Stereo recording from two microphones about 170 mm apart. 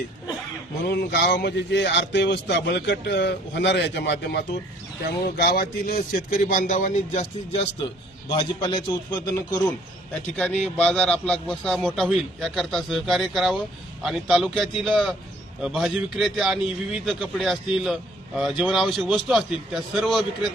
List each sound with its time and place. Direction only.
0.9 s speech: 70° left (ahead or behind)
5.4 s a man's voice: 65° left (ahead or behind); by 7.7 s 40° left (ahead or behind)
8.3 s a man's voice: 30° left (ahead or behind)
10.3 s a man's voice: 10° left (ahead or behind)